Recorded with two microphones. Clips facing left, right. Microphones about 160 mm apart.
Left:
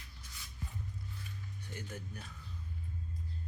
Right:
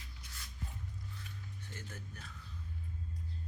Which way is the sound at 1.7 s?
15° left (ahead or behind).